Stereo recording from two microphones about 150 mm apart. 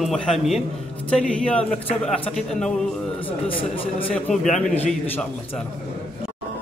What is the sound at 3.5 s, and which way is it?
Speech, 35° left (ahead or behind).